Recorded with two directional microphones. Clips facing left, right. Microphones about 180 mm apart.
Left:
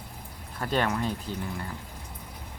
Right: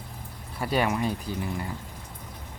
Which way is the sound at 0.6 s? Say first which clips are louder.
Right 2 dB; 10° right (ahead or behind).